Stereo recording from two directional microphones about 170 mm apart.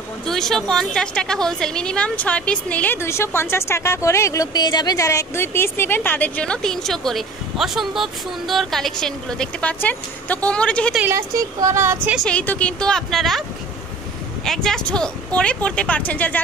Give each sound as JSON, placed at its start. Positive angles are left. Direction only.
{"t": 0.3, "sound": "a woman's voice", "side_deg": 5}
{"t": 11.0, "sound": "speech", "side_deg": -15}
{"t": 12.2, "sound": "a woman's voice", "side_deg": 5}
{"t": 14.4, "sound": "a woman's voice", "side_deg": 5}